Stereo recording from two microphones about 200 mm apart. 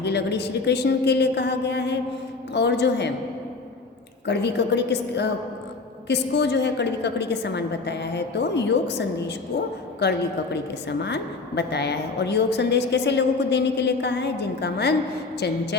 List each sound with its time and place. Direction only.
0.0 s a woman's voice: 55° left (ahead or behind)
4.3 s a woman's voice: 60° left (ahead or behind)